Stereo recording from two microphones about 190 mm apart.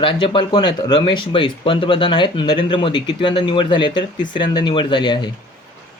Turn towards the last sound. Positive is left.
turn(degrees=25)  # may be behind; listen again after turning